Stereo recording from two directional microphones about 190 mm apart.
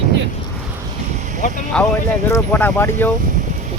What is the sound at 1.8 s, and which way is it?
Speech, 5° left (ahead or behind).